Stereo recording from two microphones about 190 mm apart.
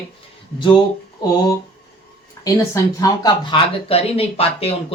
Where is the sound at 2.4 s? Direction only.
20° left (ahead or behind).